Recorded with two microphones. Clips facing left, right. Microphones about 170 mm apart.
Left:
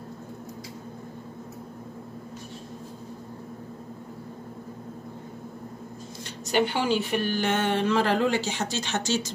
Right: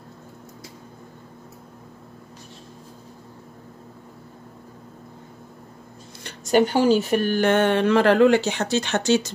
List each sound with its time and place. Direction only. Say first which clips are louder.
6.2 s speech: right 6 dB; 45° right (ahead or behind); by 9.3 s 60° right (ahead or behind)